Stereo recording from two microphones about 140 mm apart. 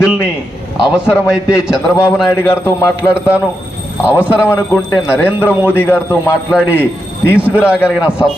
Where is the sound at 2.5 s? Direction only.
15° left (ahead or behind).